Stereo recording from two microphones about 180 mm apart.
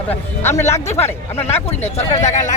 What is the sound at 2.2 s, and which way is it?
Speech, 40° left (ahead or behind).